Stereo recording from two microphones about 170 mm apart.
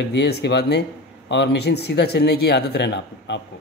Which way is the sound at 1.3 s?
90° left.